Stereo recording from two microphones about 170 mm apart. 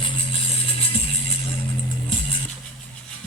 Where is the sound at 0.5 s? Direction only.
35° left (ahead or behind).